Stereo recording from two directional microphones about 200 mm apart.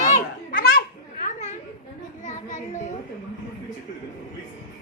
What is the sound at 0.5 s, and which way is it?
Children playing, 50° left (ahead or behind).